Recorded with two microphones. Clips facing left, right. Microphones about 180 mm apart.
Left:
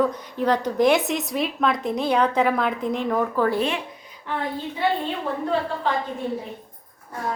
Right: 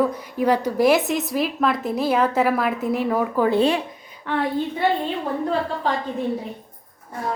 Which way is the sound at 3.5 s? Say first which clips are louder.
Right 5 dB; 30° right (ahead or behind).